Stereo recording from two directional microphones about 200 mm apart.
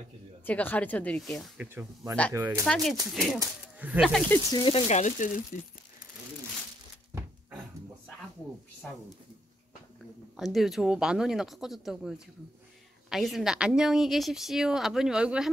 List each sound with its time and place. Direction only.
0.5 s speech: 10° left (ahead or behind)
2.3 s speech: 15° right (ahead or behind)
2.6 s a woman's voice: 5° left (ahead or behind)
4.3 s speech: 20° left (ahead or behind); by 5.4 s 40° left (ahead or behind)
8.8 s a woman's voice: 5° left (ahead or behind)
10.3 s a woman's voice: centre (ahead or behind)